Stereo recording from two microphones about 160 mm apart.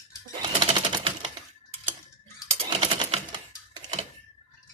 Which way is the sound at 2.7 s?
30° right (ahead or behind).